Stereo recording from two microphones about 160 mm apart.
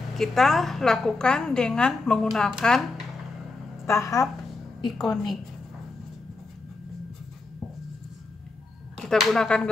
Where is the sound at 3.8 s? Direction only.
20° left (ahead or behind).